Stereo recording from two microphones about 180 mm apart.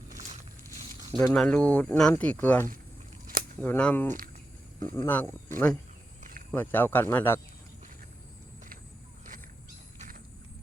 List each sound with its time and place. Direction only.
1.2 s speech: 5° left (ahead or behind)